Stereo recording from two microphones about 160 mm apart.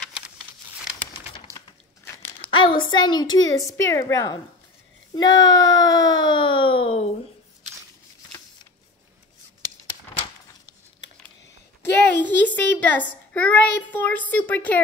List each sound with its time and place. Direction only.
2.5 s a woman's voice: 30° left (ahead or behind)
11.8 s a child's voice: 10° left (ahead or behind)